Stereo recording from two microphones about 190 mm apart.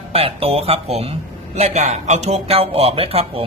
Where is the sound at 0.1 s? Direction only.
30° right (ahead or behind).